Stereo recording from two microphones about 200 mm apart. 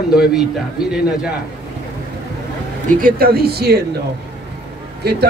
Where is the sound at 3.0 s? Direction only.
50° right (ahead or behind).